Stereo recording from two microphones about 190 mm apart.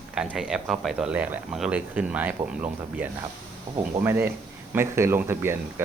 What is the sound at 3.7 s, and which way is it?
Speech, 25° right (ahead or behind).